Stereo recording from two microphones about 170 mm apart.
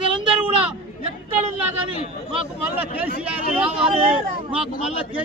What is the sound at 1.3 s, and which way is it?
Speech, 10° right (ahead or behind).